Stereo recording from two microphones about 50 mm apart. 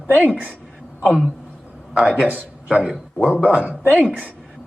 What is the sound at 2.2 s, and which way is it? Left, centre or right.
Speech, right.